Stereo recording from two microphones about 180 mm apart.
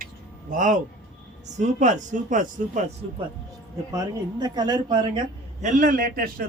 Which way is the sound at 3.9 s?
20° right (ahead or behind).